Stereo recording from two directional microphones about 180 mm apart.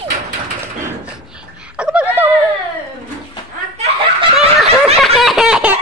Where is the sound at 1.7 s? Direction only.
5° right (ahead or behind).